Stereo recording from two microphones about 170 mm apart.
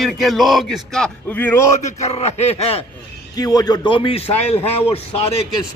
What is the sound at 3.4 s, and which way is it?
A man's voice, 20° left (ahead or behind).